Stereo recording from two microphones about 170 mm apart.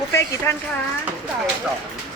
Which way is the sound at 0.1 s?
15° left (ahead or behind).